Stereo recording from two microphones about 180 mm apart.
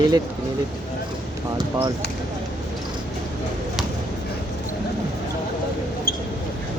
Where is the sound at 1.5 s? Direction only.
20° right (ahead or behind).